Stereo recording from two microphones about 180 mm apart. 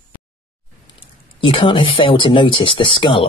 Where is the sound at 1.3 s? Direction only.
30° left (ahead or behind).